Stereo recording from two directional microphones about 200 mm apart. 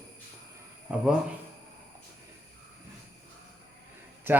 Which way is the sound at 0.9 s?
5° right (ahead or behind).